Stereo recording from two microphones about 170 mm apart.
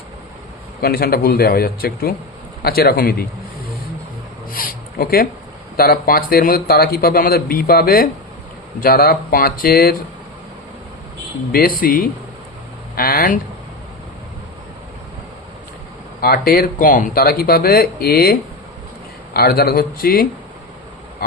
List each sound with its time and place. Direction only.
0.8 s a man's voice: 65° left (ahead or behind)
4.5 s a sound: 60° left (ahead or behind)
5.7 s a man's voice: 60° left (ahead or behind)
11.5 s a man's voice: 60° left (ahead or behind)
16.2 s a man's voice: 65° left (ahead or behind)